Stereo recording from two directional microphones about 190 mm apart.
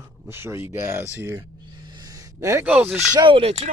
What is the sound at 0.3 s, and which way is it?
Speech, 15° right (ahead or behind).